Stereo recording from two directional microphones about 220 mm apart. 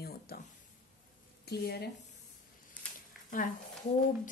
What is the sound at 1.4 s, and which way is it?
Speech, 45° left (ahead or behind).